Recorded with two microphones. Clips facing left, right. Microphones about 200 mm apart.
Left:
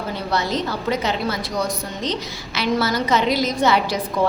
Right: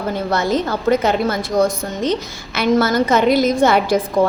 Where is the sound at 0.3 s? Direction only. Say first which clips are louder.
Right 4 dB; 50° right (ahead or behind).